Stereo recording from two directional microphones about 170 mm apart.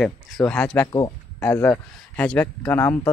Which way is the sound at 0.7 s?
20° left (ahead or behind).